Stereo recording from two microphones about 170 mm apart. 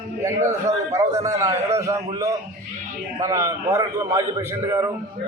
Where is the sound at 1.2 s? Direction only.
20° right (ahead or behind).